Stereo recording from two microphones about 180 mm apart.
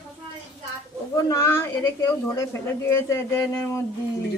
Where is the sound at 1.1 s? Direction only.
15° left (ahead or behind).